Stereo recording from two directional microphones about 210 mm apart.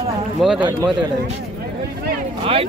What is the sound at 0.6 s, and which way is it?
Speech, 20° right (ahead or behind).